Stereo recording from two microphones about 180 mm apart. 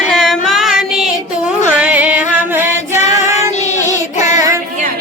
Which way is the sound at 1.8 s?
10° right (ahead or behind).